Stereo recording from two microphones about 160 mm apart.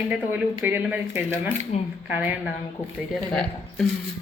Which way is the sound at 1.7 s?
45° left (ahead or behind).